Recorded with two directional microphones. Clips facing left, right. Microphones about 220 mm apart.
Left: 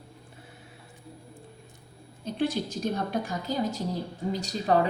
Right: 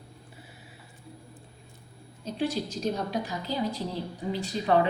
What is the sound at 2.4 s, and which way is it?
A woman's voice, 55° left (ahead or behind).